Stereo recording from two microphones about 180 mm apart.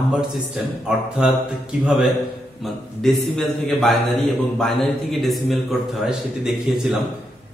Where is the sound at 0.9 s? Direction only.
5° right (ahead or behind).